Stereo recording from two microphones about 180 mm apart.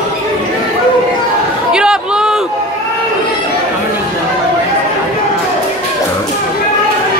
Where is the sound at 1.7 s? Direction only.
5° right (ahead or behind).